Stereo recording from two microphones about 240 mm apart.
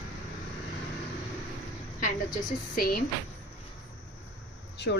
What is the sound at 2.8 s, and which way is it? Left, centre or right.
Speech, left.